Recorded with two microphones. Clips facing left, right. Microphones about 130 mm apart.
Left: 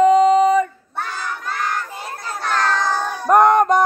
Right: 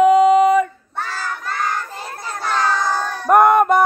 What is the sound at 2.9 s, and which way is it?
Crowd, 15° left (ahead or behind).